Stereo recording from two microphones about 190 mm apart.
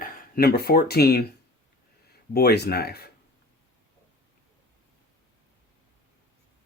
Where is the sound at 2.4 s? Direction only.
60° left (ahead or behind).